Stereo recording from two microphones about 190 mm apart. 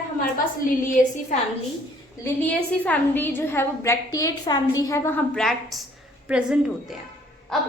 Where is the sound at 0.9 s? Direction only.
40° left (ahead or behind).